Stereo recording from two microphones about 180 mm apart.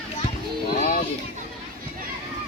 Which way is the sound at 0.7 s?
50° left (ahead or behind).